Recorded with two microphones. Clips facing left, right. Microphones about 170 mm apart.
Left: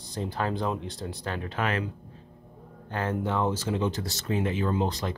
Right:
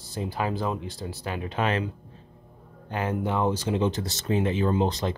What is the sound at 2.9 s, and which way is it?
Speech, 15° right (ahead or behind).